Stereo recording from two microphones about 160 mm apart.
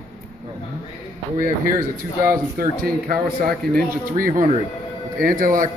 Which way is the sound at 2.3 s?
65° right (ahead or behind).